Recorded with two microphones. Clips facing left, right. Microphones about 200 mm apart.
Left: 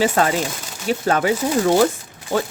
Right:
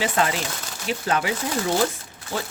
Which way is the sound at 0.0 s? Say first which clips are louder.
Left 5 dB; 45° left (ahead or behind).